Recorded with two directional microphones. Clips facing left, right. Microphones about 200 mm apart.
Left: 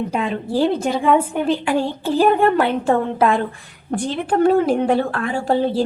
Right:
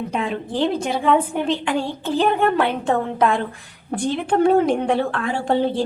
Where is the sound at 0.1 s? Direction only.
5° left (ahead or behind).